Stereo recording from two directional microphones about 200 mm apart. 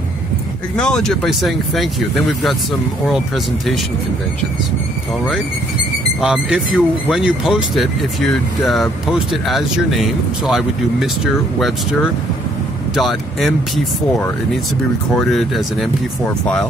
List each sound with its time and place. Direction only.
0.7 s speech: 5° left (ahead or behind)
6.2 s speech: 5° right (ahead or behind)
12.9 s speech: centre (ahead or behind)
15.1 s speech: centre (ahead or behind)